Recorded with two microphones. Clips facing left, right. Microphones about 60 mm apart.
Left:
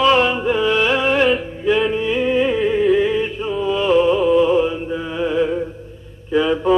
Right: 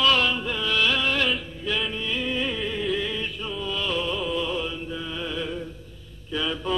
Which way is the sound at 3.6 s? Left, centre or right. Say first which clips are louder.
Left 13 dB; left.